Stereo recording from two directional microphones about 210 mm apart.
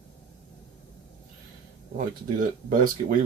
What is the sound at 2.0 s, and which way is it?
Speech, 40° right (ahead or behind).